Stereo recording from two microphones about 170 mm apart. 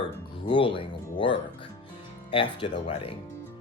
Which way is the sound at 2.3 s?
30° left (ahead or behind).